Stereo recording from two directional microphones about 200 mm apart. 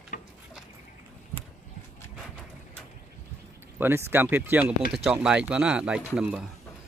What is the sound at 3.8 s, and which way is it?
A man's voice, 10° right (ahead or behind).